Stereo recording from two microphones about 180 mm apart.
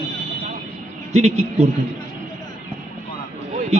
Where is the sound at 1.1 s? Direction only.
35° right (ahead or behind).